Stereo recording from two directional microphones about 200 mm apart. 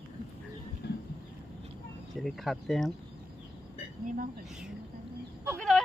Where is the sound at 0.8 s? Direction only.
55° left (ahead or behind).